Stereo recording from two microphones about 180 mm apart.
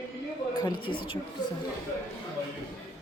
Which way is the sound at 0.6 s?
25° left (ahead or behind).